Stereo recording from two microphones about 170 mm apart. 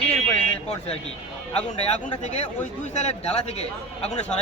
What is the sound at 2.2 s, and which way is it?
Speech, 40° left (ahead or behind).